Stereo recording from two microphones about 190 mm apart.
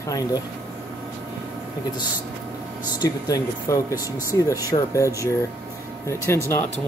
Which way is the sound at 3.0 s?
20° left (ahead or behind).